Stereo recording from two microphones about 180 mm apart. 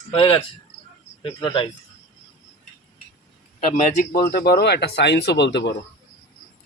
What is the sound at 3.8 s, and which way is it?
Speech, 50° left (ahead or behind).